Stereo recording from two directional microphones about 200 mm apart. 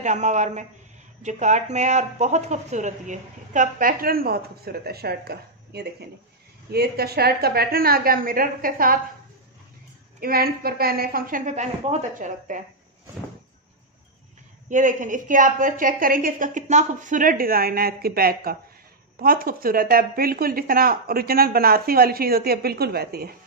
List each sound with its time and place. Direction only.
0.0 s a man's voice: 35° right (ahead or behind)
10.2 s a woman's voice: 50° right (ahead or behind)
14.7 s a woman's voice: 40° right (ahead or behind)